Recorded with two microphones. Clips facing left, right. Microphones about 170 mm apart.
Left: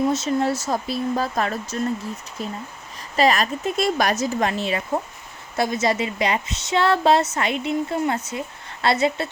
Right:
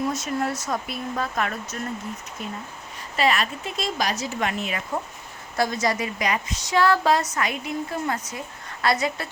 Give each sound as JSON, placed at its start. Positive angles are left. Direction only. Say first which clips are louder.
{"t": 0.0, "sound": "a woman's voice", "louder": "left 5 dB", "side_deg": 25}
{"t": 3.8, "sound": "a woman's voice", "louder": "left 5 dB", "side_deg": 60}